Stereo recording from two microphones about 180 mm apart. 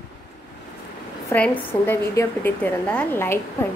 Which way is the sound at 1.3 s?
10° left (ahead or behind).